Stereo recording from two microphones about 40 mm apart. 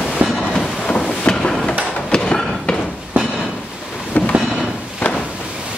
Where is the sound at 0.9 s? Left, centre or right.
Left.